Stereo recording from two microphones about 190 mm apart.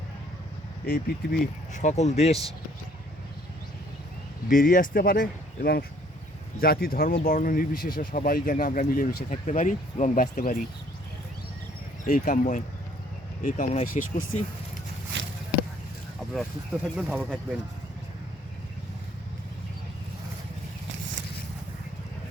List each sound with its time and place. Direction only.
0.9 s speech: 45° left (ahead or behind)
4.4 s speech: 45° left (ahead or behind)
12.0 s speech: 45° left (ahead or behind)
16.3 s speech: centre (ahead or behind)